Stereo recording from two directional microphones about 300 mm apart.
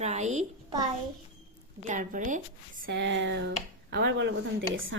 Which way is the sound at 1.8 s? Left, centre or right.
Right.